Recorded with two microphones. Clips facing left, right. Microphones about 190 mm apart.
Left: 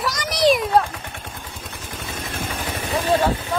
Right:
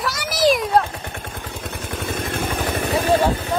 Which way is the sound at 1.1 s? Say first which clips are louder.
Right 4 dB; 60° right (ahead or behind).